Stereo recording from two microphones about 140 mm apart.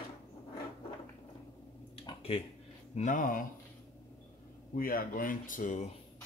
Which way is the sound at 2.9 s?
65° left (ahead or behind).